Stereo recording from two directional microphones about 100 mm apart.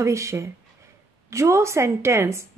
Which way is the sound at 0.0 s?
30° right (ahead or behind).